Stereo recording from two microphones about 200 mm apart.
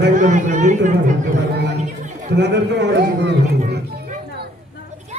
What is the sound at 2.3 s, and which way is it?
Speech, 55° right (ahead or behind).